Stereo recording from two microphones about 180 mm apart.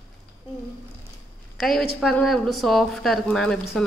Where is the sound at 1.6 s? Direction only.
Centre (ahead or behind).